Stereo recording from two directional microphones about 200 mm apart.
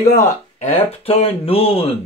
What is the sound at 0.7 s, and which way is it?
Speech, 30° left (ahead or behind).